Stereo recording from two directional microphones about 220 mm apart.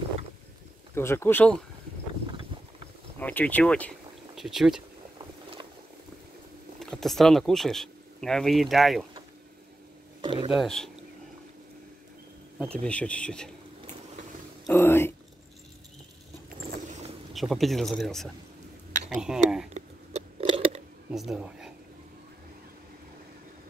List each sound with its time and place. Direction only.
0.9 s speech: 10° left (ahead or behind)
3.2 s speech: 5° left (ahead or behind)
5.2 s boat: 20° right (ahead or behind)
6.8 s speech: centre (ahead or behind)
10.2 s speech: 20° right (ahead or behind)
10.5 s speech: centre (ahead or behind)
12.5 s speech: 5° left (ahead or behind)
14.7 s speech: 10° left (ahead or behind)
17.3 s speech: centre (ahead or behind)
19.7 s a sound: 25° right (ahead or behind)
21.1 s speech: centre (ahead or behind)